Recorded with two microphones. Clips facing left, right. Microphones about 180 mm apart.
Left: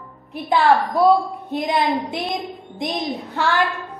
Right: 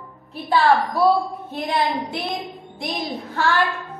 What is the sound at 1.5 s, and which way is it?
A woman's voice, 15° left (ahead or behind).